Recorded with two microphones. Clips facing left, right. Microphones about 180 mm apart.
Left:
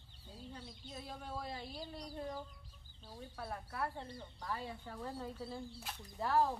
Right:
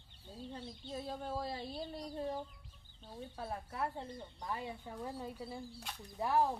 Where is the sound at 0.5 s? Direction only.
35° right (ahead or behind).